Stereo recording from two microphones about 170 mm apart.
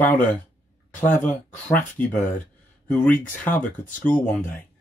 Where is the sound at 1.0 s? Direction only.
10° left (ahead or behind).